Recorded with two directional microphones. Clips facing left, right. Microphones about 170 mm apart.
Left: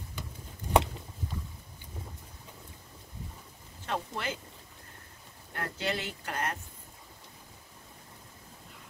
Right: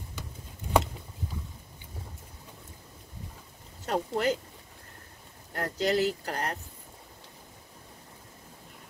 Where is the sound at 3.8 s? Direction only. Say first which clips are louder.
Right 7 dB; 40° right (ahead or behind).